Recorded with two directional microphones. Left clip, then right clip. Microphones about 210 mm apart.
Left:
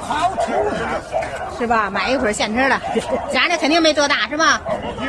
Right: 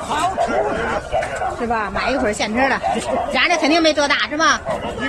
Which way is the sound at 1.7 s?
25° left (ahead or behind).